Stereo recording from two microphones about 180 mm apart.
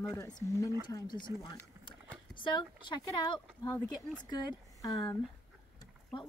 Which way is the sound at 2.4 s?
25° left (ahead or behind).